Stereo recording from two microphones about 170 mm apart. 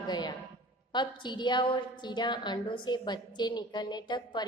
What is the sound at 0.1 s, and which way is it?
A woman's voice, 25° left (ahead or behind).